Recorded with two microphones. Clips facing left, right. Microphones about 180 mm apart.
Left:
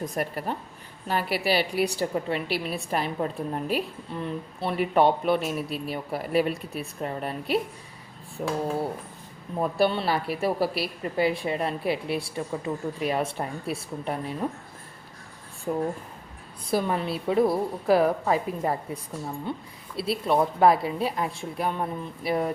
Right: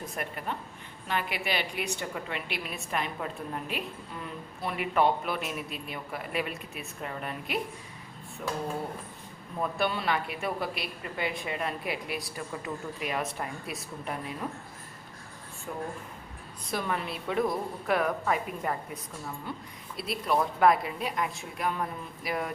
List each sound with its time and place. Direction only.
0.1 s a woman's voice: 35° left (ahead or behind)
9.6 s a woman's voice: 35° left (ahead or behind)
15.7 s a woman's voice: 40° left (ahead or behind)